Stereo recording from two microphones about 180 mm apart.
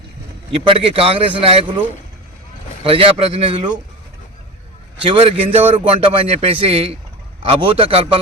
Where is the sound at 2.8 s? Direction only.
30° right (ahead or behind).